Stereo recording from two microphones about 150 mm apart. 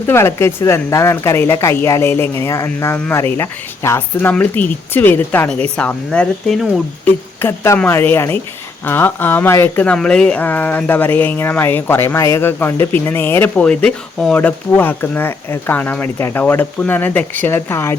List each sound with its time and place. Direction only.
0.1 s speech: 15° left (ahead or behind)
7.4 s a woman's voice: 20° left (ahead or behind)